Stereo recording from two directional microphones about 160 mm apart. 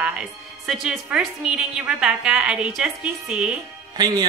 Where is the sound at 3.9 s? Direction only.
25° right (ahead or behind).